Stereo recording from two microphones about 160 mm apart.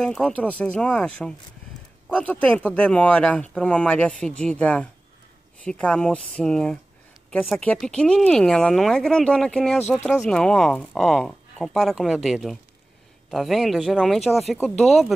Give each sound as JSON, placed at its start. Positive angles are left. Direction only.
{"t": 0.0, "sound": "speech", "side_deg": 5}